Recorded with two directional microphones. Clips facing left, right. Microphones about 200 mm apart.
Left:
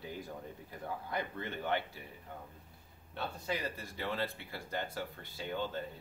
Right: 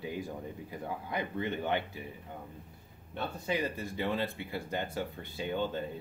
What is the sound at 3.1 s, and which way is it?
Speech, 20° right (ahead or behind).